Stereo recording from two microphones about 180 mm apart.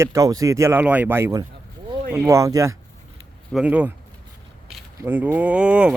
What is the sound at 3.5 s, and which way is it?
Speech, 5° right (ahead or behind).